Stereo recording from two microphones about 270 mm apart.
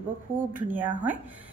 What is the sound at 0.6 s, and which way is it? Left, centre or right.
Speech, centre.